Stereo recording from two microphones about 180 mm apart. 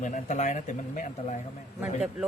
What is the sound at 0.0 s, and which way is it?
Speech, 45° left (ahead or behind).